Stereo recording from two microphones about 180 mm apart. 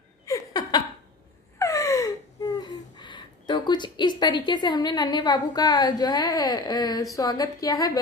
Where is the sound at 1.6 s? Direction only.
20° left (ahead or behind).